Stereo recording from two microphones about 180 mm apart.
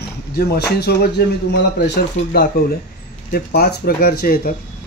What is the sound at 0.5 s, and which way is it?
Speech, 65° left (ahead or behind).